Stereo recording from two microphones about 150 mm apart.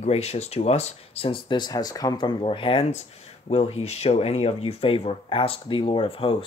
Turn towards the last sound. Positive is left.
turn(degrees=35)  # may be behind; listen again after turning